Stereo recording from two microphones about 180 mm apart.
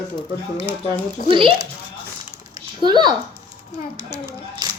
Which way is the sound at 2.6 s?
25° right (ahead or behind).